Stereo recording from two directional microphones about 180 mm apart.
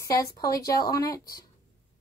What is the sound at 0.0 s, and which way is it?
A woman's voice, 20° left (ahead or behind).